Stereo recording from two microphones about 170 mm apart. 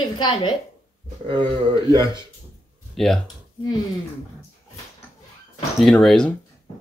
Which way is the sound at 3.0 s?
Centre (ahead or behind).